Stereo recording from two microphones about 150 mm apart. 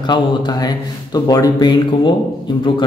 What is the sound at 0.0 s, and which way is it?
Speech, 30° left (ahead or behind).